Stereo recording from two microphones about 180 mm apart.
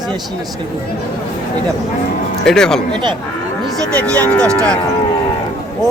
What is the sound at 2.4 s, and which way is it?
Speech, 5° left (ahead or behind).